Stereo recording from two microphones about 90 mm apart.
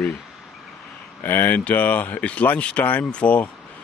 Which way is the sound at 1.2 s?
25° left (ahead or behind).